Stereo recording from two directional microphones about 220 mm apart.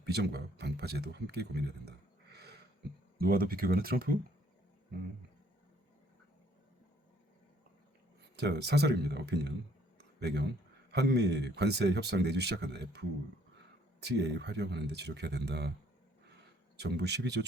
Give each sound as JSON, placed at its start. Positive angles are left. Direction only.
{"t": 0.0, "sound": "speech", "side_deg": -50}
{"t": 2.3, "sound": "a sound", "side_deg": -45}
{"t": 3.2, "sound": "speech", "side_deg": -45}
{"t": 8.4, "sound": "speech", "side_deg": -50}
{"t": 14.0, "sound": "speech", "side_deg": -50}
{"t": 16.7, "sound": "speech", "side_deg": -50}